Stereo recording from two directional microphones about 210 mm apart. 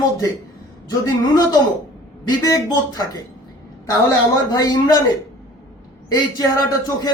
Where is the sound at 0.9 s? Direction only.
20° left (ahead or behind).